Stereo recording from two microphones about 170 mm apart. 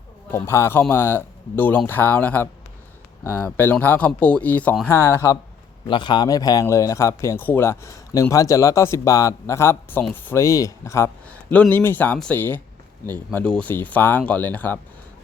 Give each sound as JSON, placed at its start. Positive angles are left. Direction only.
{"t": 0.3, "sound": "speech", "side_deg": 15}
{"t": 5.8, "sound": "a man's voice", "side_deg": 25}